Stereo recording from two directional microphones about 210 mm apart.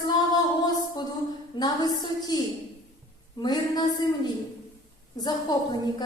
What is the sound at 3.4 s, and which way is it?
Speech, 20° left (ahead or behind).